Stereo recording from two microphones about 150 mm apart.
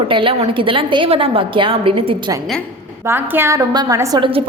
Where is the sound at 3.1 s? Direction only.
15° right (ahead or behind).